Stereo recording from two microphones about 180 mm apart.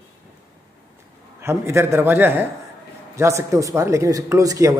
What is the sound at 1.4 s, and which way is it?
Speech, 15° right (ahead or behind).